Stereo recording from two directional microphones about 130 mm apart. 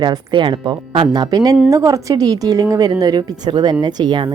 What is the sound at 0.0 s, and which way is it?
A woman's voice, 40° right (ahead or behind).